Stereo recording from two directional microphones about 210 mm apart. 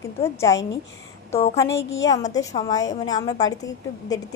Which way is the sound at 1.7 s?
60° left (ahead or behind).